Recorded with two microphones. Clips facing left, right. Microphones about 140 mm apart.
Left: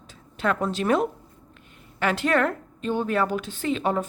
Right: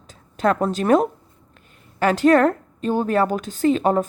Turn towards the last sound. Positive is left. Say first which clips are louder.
# right 7 dB
turn(degrees=-40)  # may be behind; listen again after turning